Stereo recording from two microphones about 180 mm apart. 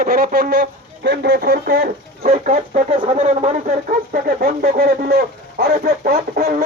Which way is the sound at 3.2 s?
40° right (ahead or behind).